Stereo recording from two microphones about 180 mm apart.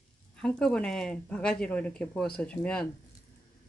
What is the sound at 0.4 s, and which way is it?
Speech, 5° left (ahead or behind).